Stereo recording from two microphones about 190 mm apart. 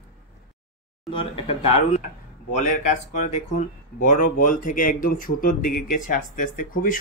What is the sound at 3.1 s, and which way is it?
Speech, 40° left (ahead or behind).